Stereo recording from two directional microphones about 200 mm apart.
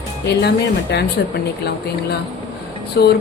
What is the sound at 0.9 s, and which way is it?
Speech, 55° left (ahead or behind).